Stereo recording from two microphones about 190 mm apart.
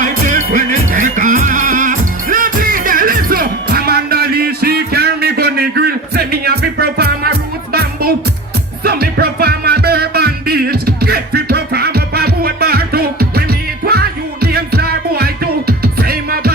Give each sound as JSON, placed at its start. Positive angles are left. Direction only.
{"t": 0.0, "sound": "music", "side_deg": -45}